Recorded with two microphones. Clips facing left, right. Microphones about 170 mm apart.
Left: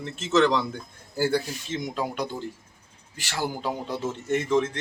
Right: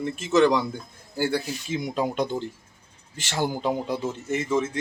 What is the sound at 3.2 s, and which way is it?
Speech, 20° right (ahead or behind).